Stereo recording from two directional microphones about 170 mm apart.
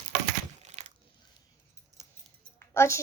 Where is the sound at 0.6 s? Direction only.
40° right (ahead or behind).